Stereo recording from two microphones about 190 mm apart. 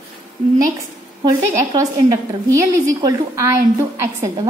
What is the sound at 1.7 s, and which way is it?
A woman's voice, 20° right (ahead or behind).